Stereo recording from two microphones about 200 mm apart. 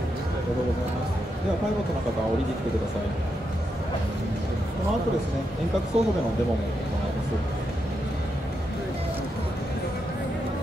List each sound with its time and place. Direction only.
5.9 s speech: 30° right (ahead or behind)